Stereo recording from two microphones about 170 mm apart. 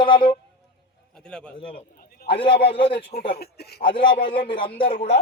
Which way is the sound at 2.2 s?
30° left (ahead or behind).